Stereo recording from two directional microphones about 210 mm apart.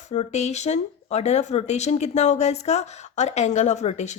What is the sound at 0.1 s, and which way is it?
Speech, 30° left (ahead or behind).